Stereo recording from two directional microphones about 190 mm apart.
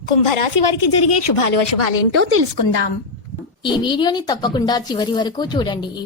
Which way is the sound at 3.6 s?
25° left (ahead or behind).